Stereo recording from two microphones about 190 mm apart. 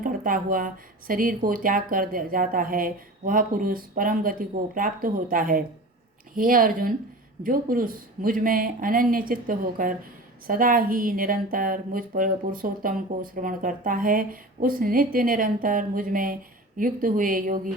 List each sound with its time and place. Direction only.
0.0 s speech: 45° right (ahead or behind)